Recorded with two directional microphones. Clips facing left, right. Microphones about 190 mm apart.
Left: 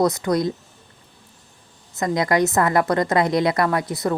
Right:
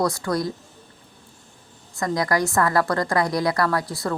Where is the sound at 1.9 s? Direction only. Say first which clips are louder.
Left 3 dB; 20° left (ahead or behind).